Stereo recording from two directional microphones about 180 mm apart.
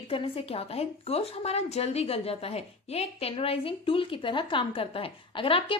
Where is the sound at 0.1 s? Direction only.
30° left (ahead or behind).